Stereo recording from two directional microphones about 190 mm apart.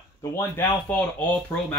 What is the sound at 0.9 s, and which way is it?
Speech, 10° left (ahead or behind).